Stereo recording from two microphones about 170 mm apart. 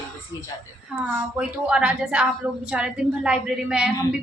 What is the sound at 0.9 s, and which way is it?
A woman's voice, 5° right (ahead or behind).